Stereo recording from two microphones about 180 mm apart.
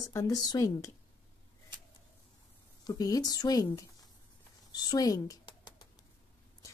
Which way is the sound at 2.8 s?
20° left (ahead or behind).